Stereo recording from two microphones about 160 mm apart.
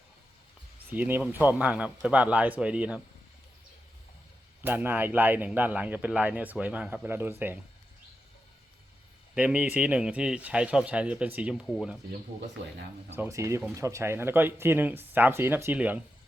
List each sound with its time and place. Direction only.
0.9 s speech: 10° right (ahead or behind)
4.6 s speech: 15° right (ahead or behind)
9.3 s speech: 5° right (ahead or behind)
13.1 s speech: 20° right (ahead or behind)